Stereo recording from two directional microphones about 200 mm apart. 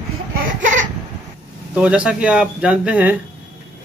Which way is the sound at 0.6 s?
40° right (ahead or behind).